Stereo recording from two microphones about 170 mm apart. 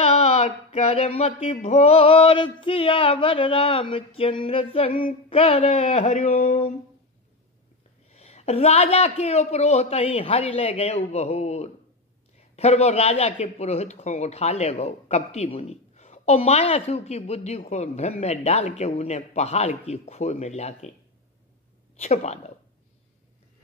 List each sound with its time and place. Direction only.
0.0 s speech: 35° left (ahead or behind)
8.1 s speech: 40° left (ahead or behind)
21.9 s speech: 40° left (ahead or behind)